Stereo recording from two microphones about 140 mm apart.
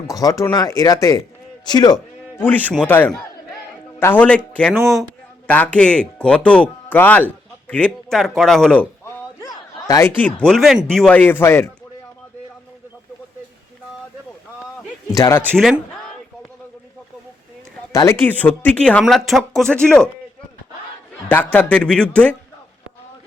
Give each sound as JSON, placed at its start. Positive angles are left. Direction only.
{"t": 0.1, "sound": "speech", "side_deg": 25}
{"t": 2.3, "sound": "speech", "side_deg": 15}
{"t": 5.5, "sound": "speech", "side_deg": 10}
{"t": 9.4, "sound": "a sound", "side_deg": 25}
{"t": 10.4, "sound": "speech", "side_deg": 0}
{"t": 15.1, "sound": "speech", "side_deg": 25}
{"t": 15.5, "sound": "speech", "side_deg": 0}
{"t": 17.9, "sound": "speech", "side_deg": 20}
{"t": 21.2, "sound": "speech", "side_deg": 10}